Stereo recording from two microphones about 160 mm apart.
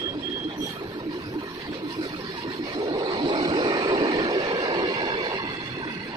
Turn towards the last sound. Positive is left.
turn(degrees=-30)  # may be behind; listen again after turning